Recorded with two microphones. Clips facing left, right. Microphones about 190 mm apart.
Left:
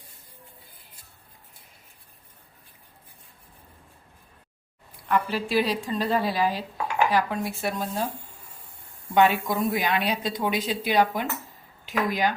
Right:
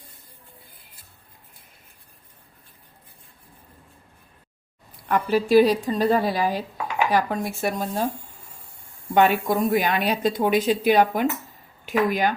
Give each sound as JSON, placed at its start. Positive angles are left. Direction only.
{"t": 5.0, "sound": "a woman's voice", "side_deg": -45}
{"t": 9.1, "sound": "a woman's voice", "side_deg": -50}